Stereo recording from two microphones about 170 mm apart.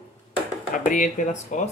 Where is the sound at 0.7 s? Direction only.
50° left (ahead or behind).